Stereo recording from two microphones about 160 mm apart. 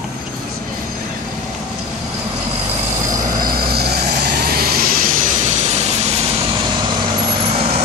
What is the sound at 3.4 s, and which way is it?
Vehicle, 70° right (ahead or behind).